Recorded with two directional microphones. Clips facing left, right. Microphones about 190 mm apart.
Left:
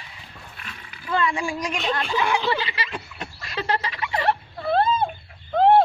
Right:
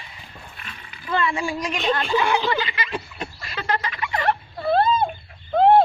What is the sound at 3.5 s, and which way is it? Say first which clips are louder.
Turkey: even; 30° left (ahead or behind).